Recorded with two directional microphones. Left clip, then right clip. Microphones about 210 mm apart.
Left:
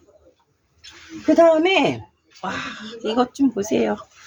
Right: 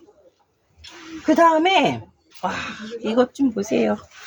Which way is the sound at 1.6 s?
15° left (ahead or behind).